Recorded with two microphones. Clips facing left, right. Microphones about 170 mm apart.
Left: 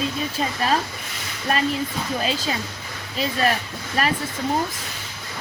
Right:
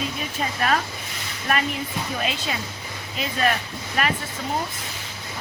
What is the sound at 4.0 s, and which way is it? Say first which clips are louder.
Speech: left 1 dB; 35° left (ahead or behind).